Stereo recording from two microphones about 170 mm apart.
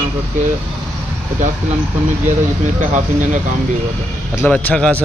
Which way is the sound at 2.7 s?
45° right (ahead or behind).